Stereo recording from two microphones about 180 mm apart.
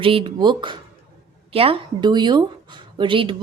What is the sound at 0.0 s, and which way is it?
Speech, 30° right (ahead or behind).